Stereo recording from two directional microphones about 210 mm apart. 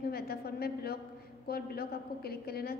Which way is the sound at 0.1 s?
50° left (ahead or behind).